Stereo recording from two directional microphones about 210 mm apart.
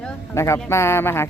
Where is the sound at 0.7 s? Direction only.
10° left (ahead or behind).